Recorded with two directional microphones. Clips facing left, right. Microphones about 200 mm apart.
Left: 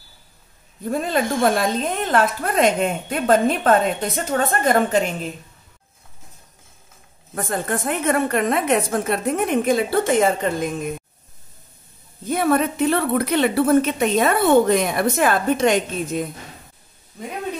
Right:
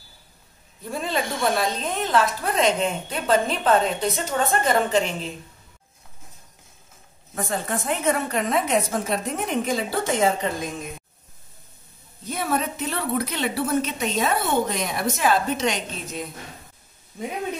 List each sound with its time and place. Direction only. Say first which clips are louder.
0.8 s a woman's voice: left 5 dB; 50° left (ahead or behind)
7.3 s a woman's voice: left 3 dB; 50° left (ahead or behind)
12.3 s a woman's voice: left 7 dB; 55° left (ahead or behind)